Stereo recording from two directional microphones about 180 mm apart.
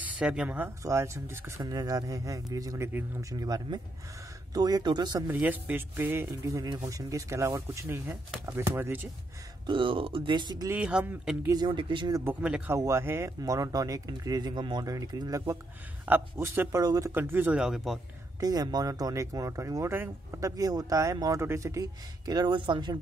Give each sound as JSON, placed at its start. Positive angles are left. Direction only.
{"t": 0.0, "sound": "speech", "side_deg": -5}
{"t": 5.3, "sound": "speech", "side_deg": -10}
{"t": 9.7, "sound": "speech", "side_deg": -30}
{"t": 10.7, "sound": "speech", "side_deg": -5}
{"t": 11.5, "sound": "speech", "side_deg": -25}
{"t": 12.3, "sound": "speech", "side_deg": -5}
{"t": 18.4, "sound": "speech", "side_deg": -20}